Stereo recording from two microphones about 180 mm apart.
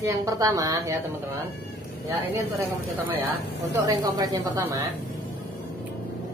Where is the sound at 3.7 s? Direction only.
20° right (ahead or behind).